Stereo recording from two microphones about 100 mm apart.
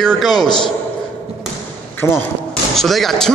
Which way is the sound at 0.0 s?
Centre (ahead or behind).